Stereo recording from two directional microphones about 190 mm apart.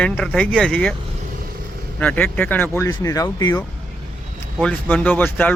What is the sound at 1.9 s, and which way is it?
Speech, 5° left (ahead or behind).